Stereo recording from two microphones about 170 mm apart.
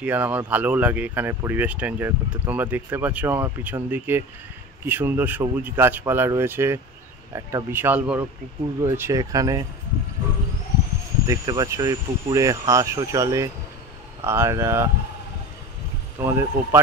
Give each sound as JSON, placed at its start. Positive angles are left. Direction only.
{"t": 0.0, "sound": "speech", "side_deg": -10}
{"t": 11.2, "sound": "speech", "side_deg": -20}
{"t": 16.2, "sound": "speech", "side_deg": -15}